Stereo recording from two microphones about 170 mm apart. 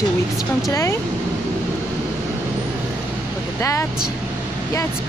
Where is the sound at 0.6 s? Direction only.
20° left (ahead or behind).